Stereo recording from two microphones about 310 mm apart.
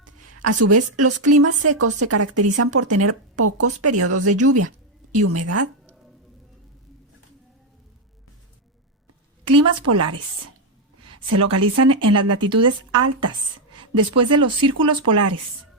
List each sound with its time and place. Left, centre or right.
0.0 s a woman's voice: right
9.5 s a woman's voice: right
11.3 s a woman's voice: right